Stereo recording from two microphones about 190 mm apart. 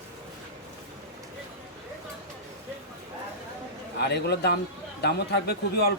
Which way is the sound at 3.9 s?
60° left (ahead or behind).